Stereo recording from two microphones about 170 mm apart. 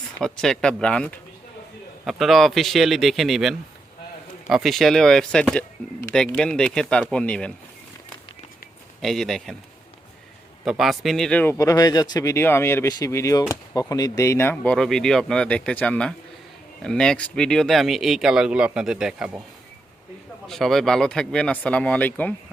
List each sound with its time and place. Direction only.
0.2 s speech: 5° left (ahead or behind)
9.0 s speech: centre (ahead or behind)
10.7 s speech: centre (ahead or behind)
20.5 s speech: centre (ahead or behind)